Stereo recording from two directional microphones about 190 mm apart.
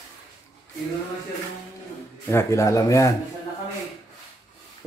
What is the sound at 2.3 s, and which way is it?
Speech, 15° left (ahead or behind).